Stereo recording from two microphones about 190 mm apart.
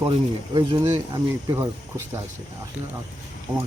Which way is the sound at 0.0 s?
25° right (ahead or behind).